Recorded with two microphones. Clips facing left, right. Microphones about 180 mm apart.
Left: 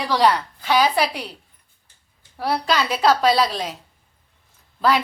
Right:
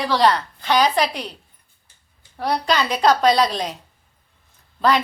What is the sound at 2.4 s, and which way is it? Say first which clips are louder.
A woman's voice: right 1 dB; 5° left (ahead or behind).